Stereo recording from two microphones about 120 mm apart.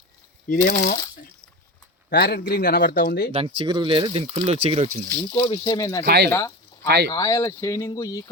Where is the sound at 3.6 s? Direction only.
40° right (ahead or behind).